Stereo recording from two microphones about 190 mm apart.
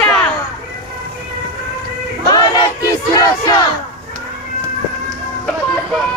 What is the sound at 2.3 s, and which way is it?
Choir, 20° left (ahead or behind).